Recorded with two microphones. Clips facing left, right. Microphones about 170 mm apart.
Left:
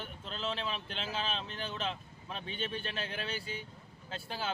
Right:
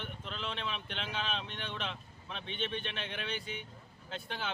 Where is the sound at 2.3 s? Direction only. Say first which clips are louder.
Even; 35° left (ahead or behind).